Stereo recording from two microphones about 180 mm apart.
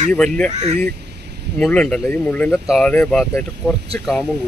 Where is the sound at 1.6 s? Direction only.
5° left (ahead or behind).